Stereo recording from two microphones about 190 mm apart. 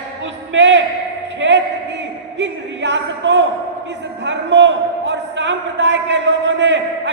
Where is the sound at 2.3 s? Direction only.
70° right (ahead or behind).